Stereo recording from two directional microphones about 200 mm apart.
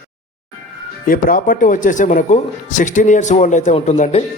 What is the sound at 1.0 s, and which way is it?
Speech, 45° left (ahead or behind).